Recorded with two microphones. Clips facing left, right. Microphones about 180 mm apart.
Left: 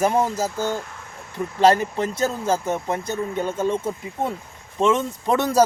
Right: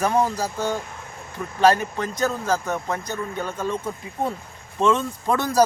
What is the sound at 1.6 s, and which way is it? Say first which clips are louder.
Speech: left 1 dB; 25° left (ahead or behind).